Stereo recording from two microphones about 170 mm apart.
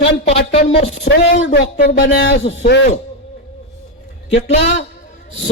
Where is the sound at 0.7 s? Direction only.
40° left (ahead or behind).